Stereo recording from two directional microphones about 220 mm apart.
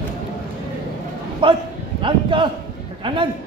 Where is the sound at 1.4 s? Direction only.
25° right (ahead or behind).